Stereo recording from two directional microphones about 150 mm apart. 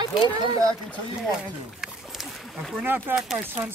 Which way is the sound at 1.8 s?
Centre (ahead or behind).